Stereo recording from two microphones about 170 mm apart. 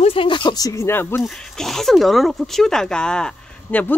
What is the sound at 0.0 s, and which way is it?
Speech, 30° left (ahead or behind).